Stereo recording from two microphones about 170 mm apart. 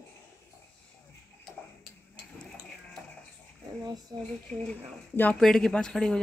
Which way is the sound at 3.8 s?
25° right (ahead or behind).